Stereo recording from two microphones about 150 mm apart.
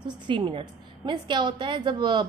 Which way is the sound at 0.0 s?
30° right (ahead or behind).